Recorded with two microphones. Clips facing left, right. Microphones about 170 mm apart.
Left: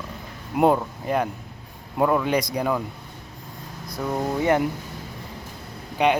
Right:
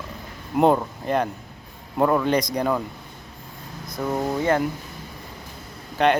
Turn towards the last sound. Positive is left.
turn(degrees=10)  # may be behind; listen again after turning